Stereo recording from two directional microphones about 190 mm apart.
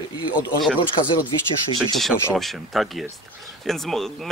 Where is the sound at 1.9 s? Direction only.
Centre (ahead or behind).